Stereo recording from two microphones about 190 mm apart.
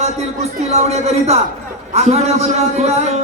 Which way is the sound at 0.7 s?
35° right (ahead or behind).